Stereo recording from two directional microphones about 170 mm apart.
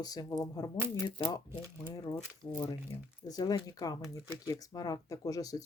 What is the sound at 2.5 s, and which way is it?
Speech, 25° left (ahead or behind).